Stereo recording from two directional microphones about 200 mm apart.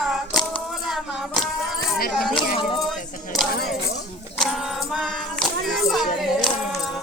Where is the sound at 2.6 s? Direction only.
25° left (ahead or behind).